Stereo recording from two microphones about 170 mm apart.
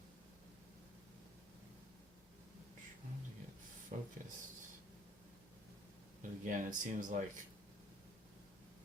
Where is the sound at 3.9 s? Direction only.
45° right (ahead or behind).